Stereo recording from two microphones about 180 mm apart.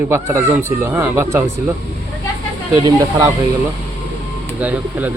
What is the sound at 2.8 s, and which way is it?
Speech, 20° right (ahead or behind).